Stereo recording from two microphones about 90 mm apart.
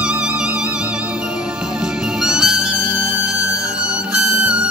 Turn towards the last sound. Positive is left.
turn(degrees=-15)  # may be behind; listen again after turning